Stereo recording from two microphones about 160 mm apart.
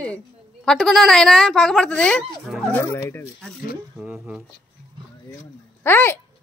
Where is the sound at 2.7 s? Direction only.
15° left (ahead or behind).